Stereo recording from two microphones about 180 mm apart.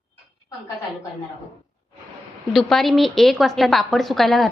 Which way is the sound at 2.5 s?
Centre (ahead or behind).